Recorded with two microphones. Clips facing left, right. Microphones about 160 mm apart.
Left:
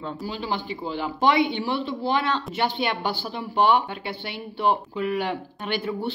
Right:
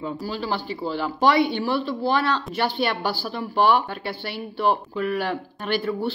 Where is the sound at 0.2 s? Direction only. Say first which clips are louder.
Right 2 dB; 20° left (ahead or behind).